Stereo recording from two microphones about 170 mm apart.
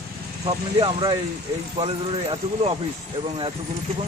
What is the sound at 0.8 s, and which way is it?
Speech, 25° right (ahead or behind).